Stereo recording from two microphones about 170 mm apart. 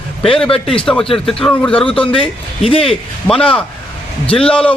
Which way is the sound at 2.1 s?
30° left (ahead or behind).